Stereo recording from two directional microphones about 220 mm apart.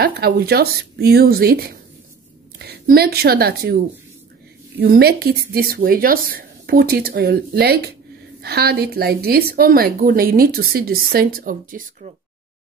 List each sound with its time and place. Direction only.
0.0 s speech: 45° right (ahead or behind)